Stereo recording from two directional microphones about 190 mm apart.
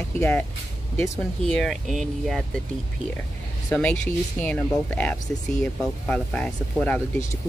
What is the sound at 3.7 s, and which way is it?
Speech, 5° left (ahead or behind).